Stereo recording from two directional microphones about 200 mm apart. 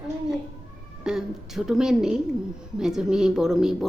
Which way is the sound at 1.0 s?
Centre (ahead or behind).